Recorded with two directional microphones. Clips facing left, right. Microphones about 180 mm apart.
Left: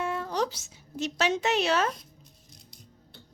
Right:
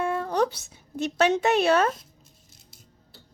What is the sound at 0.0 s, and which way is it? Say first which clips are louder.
A woman's voice: right 5 dB; 55° right (ahead or behind).